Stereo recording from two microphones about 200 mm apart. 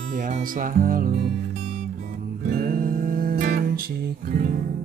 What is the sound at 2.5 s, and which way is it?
Music, 45° right (ahead or behind).